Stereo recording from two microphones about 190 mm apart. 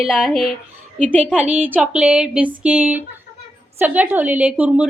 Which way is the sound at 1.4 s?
10° right (ahead or behind).